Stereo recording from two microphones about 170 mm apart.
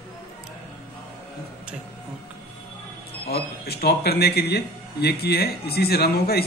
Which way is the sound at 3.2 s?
70° left (ahead or behind).